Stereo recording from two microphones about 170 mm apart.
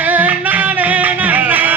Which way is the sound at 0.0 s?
10° right (ahead or behind).